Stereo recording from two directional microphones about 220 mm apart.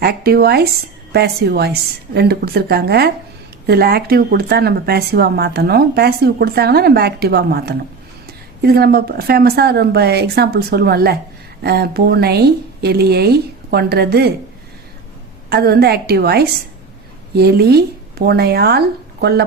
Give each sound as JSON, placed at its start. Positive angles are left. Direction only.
{"t": 0.0, "sound": "speech", "side_deg": -45}
{"t": 15.4, "sound": "speech", "side_deg": -45}